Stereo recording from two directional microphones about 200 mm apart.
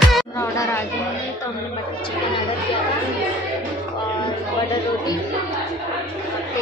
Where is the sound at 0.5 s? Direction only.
15° left (ahead or behind).